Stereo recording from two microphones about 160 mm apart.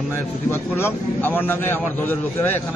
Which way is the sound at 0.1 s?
15° left (ahead or behind).